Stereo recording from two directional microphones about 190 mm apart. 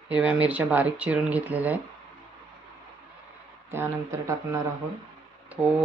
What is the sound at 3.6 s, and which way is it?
Speech, 10° right (ahead or behind).